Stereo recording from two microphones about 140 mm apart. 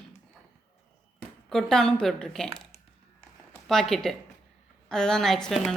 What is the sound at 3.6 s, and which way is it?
Speech, 5° left (ahead or behind).